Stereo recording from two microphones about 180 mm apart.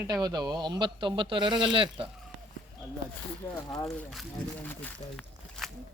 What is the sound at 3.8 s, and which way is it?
Speech, centre (ahead or behind).